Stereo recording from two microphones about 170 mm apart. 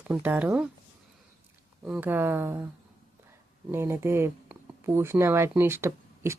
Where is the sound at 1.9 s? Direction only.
10° right (ahead or behind).